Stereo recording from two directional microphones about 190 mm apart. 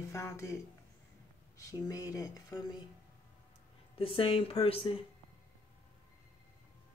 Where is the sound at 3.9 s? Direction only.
30° left (ahead or behind).